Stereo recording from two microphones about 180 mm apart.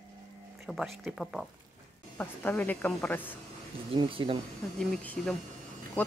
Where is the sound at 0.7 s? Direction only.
Centre (ahead or behind).